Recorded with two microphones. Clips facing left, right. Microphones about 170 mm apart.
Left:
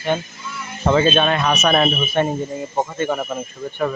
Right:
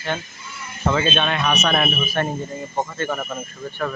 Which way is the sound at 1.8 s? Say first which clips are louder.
Left 4 dB; 20° left (ahead or behind).